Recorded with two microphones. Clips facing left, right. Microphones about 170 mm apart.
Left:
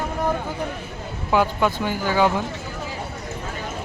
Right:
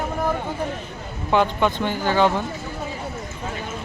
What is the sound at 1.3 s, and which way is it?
A man's voice, 5° left (ahead or behind).